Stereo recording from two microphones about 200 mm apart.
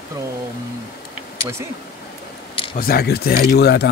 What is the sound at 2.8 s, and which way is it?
Speech, 50° left (ahead or behind).